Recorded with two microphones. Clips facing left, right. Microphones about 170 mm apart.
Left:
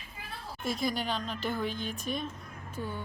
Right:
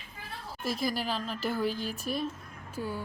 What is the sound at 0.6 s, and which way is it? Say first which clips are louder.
Speech: even; centre (ahead or behind).